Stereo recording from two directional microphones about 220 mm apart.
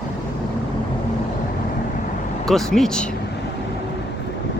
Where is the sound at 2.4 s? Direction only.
Centre (ahead or behind).